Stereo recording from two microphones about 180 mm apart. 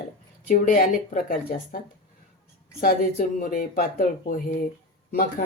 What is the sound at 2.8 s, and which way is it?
Speech, 50° left (ahead or behind).